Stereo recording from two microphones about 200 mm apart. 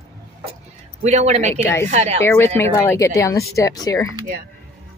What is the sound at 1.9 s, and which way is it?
Speech, 35° right (ahead or behind).